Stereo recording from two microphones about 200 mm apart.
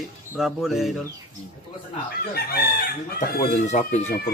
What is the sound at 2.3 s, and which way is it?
Chicken, 50° left (ahead or behind).